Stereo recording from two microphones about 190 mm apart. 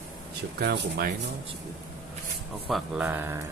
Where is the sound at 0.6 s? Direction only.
60° right (ahead or behind).